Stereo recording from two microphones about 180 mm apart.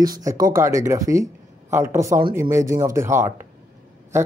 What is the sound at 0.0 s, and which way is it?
Speech, 20° right (ahead or behind).